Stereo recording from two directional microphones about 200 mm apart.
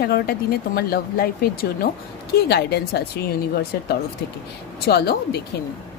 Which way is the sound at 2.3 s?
55° left (ahead or behind).